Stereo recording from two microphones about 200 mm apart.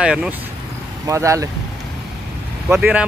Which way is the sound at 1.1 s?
15° right (ahead or behind).